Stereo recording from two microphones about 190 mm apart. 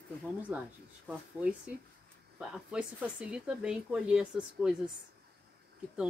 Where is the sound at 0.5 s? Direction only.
10° right (ahead or behind).